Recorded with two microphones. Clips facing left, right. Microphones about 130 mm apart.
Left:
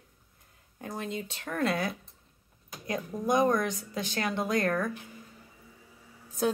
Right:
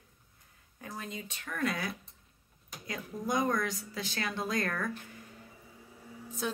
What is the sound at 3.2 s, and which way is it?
Speech, 25° left (ahead or behind).